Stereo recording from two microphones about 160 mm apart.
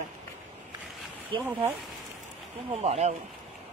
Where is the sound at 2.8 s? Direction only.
40° right (ahead or behind).